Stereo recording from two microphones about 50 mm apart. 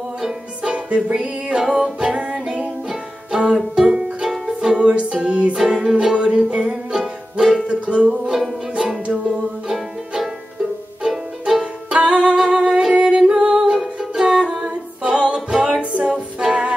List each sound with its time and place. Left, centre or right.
0.7 s music: right
1.5 s music: centre
4.8 s music: right
5.6 s music: centre
6.9 s music: centre
7.6 s music: right
8.3 s music: centre
9.0 s music: right
9.7 s music: centre
11.6 s music: centre
14.3 s humming: centre
15.1 s music: right
15.8 s music: right
16.3 s music: centre